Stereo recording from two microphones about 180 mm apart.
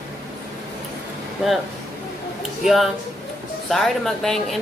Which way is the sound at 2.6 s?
Centre (ahead or behind).